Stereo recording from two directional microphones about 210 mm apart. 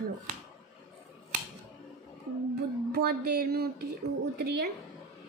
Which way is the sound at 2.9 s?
50° right (ahead or behind).